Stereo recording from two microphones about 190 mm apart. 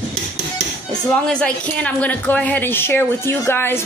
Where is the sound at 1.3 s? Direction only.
5° left (ahead or behind).